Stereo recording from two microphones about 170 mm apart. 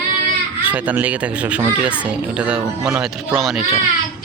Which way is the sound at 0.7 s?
10° right (ahead or behind).